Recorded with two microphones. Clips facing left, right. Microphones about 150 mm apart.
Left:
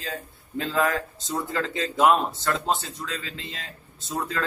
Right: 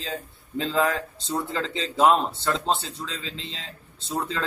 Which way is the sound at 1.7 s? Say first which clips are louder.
Even; 20° right (ahead or behind).